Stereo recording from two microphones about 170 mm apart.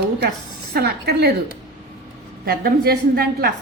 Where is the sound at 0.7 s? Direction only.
70° right (ahead or behind).